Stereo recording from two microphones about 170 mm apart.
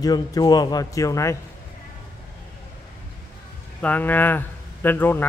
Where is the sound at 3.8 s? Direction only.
10° left (ahead or behind).